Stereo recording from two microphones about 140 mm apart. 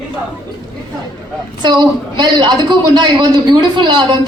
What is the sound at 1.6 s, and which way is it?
A man's voice, 35° right (ahead or behind).